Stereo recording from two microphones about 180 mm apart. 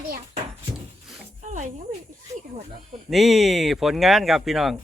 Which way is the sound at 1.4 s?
45° right (ahead or behind).